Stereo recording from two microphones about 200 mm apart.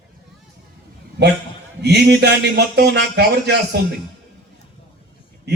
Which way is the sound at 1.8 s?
55° right (ahead or behind).